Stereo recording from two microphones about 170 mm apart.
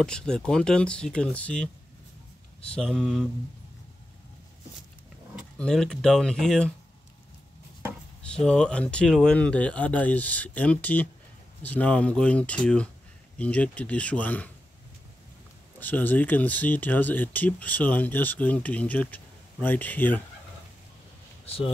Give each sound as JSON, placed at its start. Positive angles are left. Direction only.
{"t": 0.0, "sound": "speech", "side_deg": 5}
{"t": 2.7, "sound": "speech", "side_deg": 5}
{"t": 5.6, "sound": "speech", "side_deg": 5}
{"t": 8.2, "sound": "speech", "side_deg": 5}
{"t": 15.8, "sound": "speech", "side_deg": 10}
{"t": 21.5, "sound": "speech", "side_deg": 35}